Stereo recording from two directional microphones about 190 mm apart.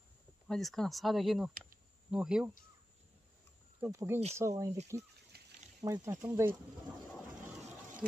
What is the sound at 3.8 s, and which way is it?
Speech, 15° right (ahead or behind).